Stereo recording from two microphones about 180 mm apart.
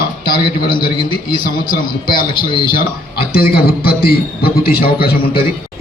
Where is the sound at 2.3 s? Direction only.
25° left (ahead or behind).